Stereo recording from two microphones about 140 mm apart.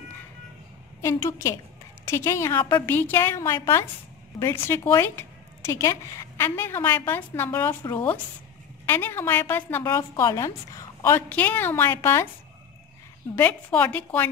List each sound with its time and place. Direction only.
1.0 s a woman's voice: 20° left (ahead or behind)
13.4 s a woman's voice: 10° left (ahead or behind)